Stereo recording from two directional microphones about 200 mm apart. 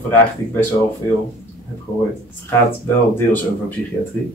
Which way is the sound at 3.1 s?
10° left (ahead or behind).